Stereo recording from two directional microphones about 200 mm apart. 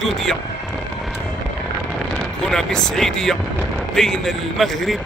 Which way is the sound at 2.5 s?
5° left (ahead or behind).